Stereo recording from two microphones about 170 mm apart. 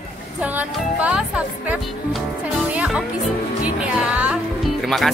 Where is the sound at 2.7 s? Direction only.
5° right (ahead or behind).